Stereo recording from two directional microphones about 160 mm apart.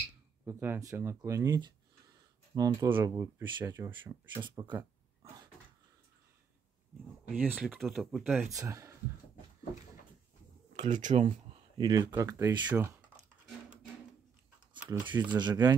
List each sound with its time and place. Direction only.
0.5 s speech: 15° right (ahead or behind)
7.5 s speech: centre (ahead or behind)
8.5 s speech: 20° right (ahead or behind)
10.8 s speech: 50° right (ahead or behind)
11.8 s speech: 25° right (ahead or behind)
14.9 s speech: 30° right (ahead or behind)